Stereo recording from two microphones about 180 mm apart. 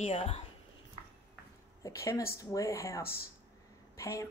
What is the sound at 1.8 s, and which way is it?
Speech, 20° left (ahead or behind).